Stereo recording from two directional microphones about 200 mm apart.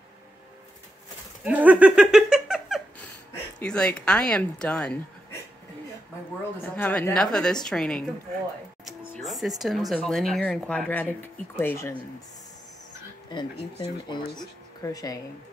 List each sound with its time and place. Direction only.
1.4 s a sound: 5° right (ahead or behind)
3.5 s speech: 5° left (ahead or behind)
6.6 s a woman's voice: 10° left (ahead or behind)
9.1 s speech: centre (ahead or behind)
13.3 s speech: 25° left (ahead or behind)